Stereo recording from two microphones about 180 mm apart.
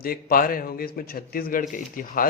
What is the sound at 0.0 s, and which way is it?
Speech, 55° left (ahead or behind).